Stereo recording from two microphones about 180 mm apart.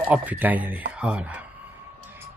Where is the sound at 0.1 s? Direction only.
10° right (ahead or behind).